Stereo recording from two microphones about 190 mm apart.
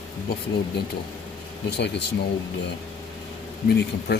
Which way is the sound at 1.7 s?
65° left (ahead or behind).